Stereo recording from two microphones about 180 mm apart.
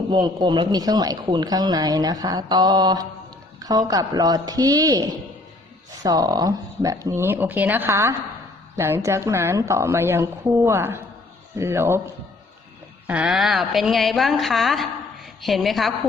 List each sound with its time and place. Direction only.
0.1 s a woman's voice: 25° right (ahead or behind)
13.1 s a woman's voice: 5° right (ahead or behind)